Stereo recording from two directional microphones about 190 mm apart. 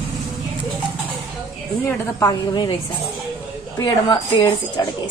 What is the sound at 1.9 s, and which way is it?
Speech, 10° left (ahead or behind).